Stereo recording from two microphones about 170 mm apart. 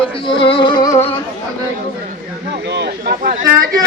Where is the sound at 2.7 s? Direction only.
75° right (ahead or behind).